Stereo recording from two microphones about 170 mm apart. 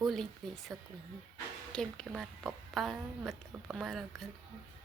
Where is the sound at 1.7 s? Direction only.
5° left (ahead or behind).